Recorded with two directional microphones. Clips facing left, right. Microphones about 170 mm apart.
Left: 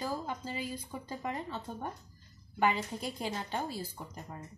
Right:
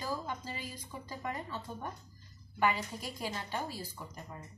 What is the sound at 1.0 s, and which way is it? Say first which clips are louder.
Speech: left 1 dB; 30° left (ahead or behind).